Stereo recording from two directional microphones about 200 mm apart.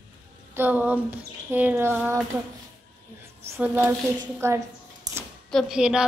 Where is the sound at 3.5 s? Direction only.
10° right (ahead or behind).